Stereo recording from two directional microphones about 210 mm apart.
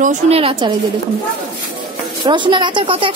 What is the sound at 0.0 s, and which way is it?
Speech, 30° right (ahead or behind).